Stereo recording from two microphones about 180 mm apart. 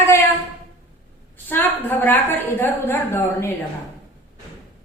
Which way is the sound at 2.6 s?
15° left (ahead or behind).